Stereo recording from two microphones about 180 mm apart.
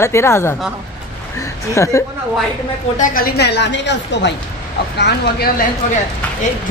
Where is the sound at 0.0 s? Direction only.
15° left (ahead or behind).